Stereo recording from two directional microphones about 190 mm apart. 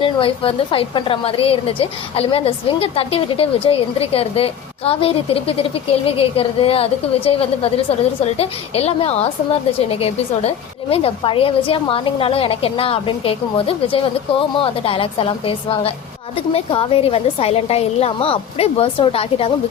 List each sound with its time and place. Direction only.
0.0 s a woman's voice: 30° left (ahead or behind)